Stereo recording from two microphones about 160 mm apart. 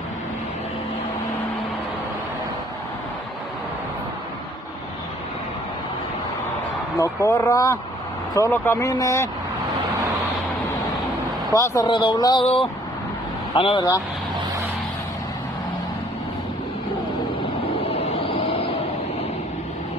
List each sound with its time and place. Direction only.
7.0 s speech: 15° left (ahead or behind)
11.5 s speech: 20° left (ahead or behind)
11.9 s speech: 30° left (ahead or behind)
13.6 s speech: 35° left (ahead or behind)
17.8 s a sound: 40° left (ahead or behind)